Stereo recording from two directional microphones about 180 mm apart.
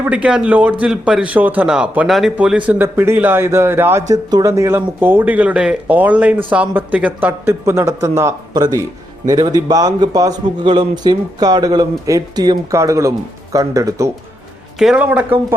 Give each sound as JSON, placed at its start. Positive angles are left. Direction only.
{"t": 0.0, "sound": "a man's voice", "side_deg": -5}
{"t": 14.8, "sound": "a man's voice", "side_deg": -5}